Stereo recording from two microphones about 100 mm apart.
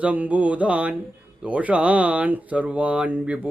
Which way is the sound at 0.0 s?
15° right (ahead or behind).